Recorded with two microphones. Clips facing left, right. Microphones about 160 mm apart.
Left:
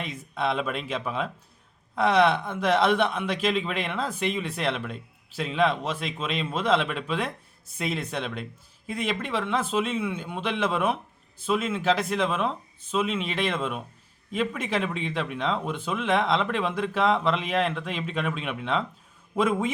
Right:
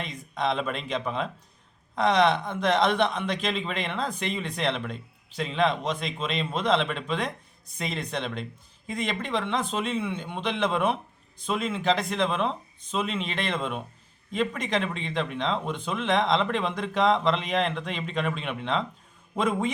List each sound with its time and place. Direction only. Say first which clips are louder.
0.3 s a man's voice: even; 5° left (ahead or behind)